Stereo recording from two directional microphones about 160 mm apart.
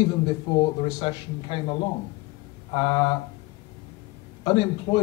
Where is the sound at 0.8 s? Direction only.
30° left (ahead or behind).